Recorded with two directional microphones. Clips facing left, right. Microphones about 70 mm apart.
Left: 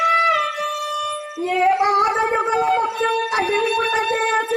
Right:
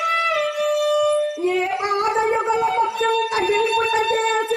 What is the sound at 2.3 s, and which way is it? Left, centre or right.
Gargling, left.